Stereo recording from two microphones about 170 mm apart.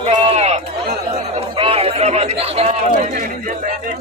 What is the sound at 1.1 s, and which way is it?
Chatter, 35° right (ahead or behind).